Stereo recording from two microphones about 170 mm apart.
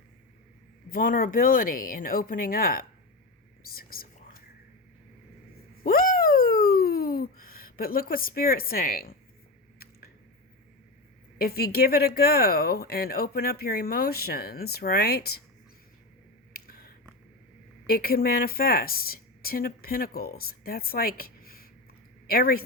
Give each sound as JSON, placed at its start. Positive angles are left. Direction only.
{"t": 0.9, "sound": "speech", "side_deg": 55}
{"t": 3.8, "sound": "whispering", "side_deg": 60}
{"t": 5.8, "sound": "a sound", "side_deg": 55}
{"t": 11.3, "sound": "speech", "side_deg": 65}
{"t": 16.5, "sound": "a sound", "side_deg": 65}
{"t": 17.8, "sound": "speech", "side_deg": 65}